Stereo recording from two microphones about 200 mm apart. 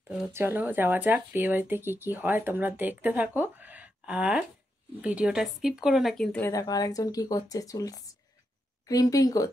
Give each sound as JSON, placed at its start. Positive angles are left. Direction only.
{"t": 0.3, "sound": "speech", "side_deg": -10}
{"t": 6.5, "sound": "speech", "side_deg": 20}